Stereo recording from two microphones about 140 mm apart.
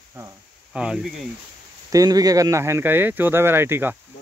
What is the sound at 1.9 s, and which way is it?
A man's voice, 25° right (ahead or behind).